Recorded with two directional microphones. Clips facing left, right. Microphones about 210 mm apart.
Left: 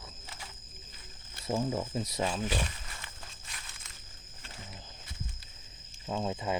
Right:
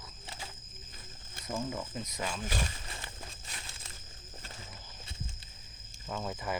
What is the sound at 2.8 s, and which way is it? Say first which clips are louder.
Horse: right 3 dB; 30° right (ahead or behind).